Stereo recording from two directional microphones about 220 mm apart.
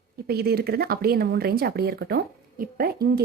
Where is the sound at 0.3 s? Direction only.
45° right (ahead or behind).